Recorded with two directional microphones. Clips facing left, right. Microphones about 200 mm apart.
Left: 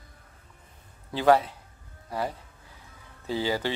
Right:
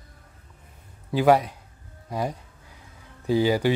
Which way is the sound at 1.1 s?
15° right (ahead or behind).